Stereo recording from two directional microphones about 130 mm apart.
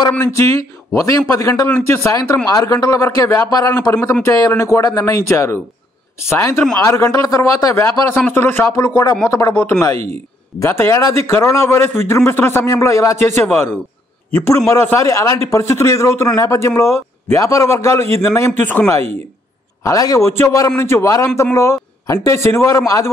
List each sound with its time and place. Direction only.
0.2 s a man's voice: 25° left (ahead or behind)